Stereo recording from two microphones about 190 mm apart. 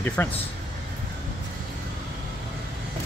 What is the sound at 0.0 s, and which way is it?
Speech, 10° left (ahead or behind).